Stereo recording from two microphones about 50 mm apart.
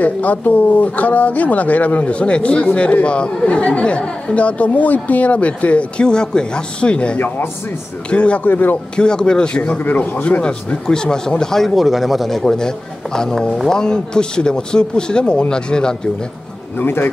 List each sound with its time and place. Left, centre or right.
0.0 s speech: left
8.5 s a man's voice: left
8.9 s speech: centre
9.8 s a man's voice: left
10.4 s speech: centre
16.7 s a man's voice: left